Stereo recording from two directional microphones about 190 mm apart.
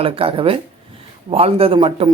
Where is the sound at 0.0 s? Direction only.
30° right (ahead or behind).